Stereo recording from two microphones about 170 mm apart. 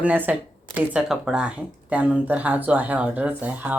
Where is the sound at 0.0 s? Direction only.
10° right (ahead or behind).